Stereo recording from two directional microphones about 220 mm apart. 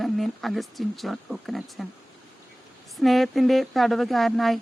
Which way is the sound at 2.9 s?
Centre (ahead or behind).